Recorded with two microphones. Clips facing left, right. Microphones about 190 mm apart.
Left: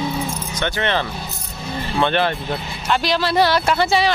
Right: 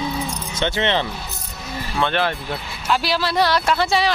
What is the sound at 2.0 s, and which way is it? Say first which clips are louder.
Speech: left 2 dB; 5° right (ahead or behind).